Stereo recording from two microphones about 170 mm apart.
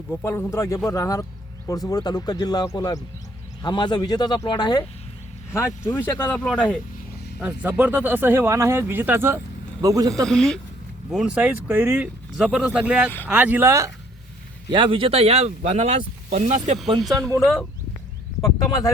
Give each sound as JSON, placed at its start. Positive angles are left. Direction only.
{"t": 0.1, "sound": "speech", "side_deg": 10}
{"t": 7.3, "sound": "a man's voice", "side_deg": -5}
{"t": 10.2, "sound": "speech", "side_deg": 5}
{"t": 14.7, "sound": "speech", "side_deg": -30}
{"t": 17.4, "sound": "speech", "side_deg": 0}